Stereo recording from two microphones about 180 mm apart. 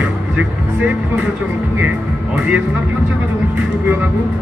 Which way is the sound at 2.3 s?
10° right (ahead or behind).